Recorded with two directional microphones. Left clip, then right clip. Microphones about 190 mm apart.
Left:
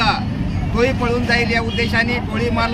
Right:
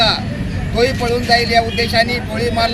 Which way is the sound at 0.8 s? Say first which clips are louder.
Right 2 dB; centre (ahead or behind).